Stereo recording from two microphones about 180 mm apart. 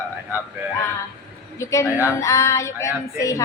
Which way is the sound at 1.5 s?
15° left (ahead or behind).